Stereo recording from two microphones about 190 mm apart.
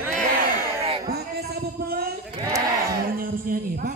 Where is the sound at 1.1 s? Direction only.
55° right (ahead or behind).